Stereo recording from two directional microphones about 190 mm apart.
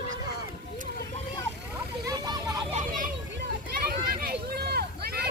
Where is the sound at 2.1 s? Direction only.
20° right (ahead or behind).